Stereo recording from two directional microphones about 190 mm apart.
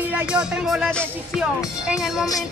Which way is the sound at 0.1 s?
5° right (ahead or behind).